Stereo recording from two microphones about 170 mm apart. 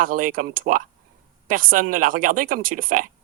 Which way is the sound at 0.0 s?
55° right (ahead or behind).